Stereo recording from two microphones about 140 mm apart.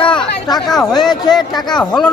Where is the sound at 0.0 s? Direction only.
35° left (ahead or behind).